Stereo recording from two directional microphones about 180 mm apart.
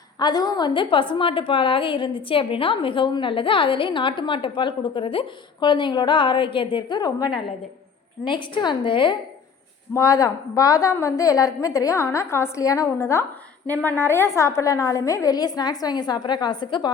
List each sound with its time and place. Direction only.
0.2 s a woman's voice: 20° left (ahead or behind)